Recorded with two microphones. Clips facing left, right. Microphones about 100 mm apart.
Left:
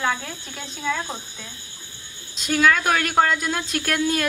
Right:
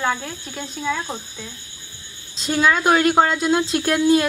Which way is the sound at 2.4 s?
25° right (ahead or behind).